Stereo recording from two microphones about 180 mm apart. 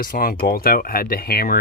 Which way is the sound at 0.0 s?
55° left (ahead or behind).